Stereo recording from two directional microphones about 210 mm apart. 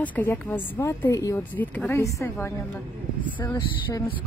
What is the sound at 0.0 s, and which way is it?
Speech, 10° left (ahead or behind).